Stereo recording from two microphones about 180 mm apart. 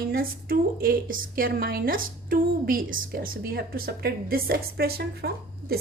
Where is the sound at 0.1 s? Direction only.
55° right (ahead or behind).